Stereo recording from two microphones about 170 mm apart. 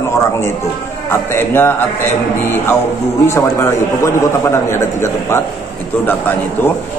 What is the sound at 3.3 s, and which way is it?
A man's voice, 15° left (ahead or behind).